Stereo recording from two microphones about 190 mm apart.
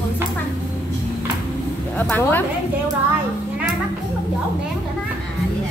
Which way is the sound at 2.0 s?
10° left (ahead or behind).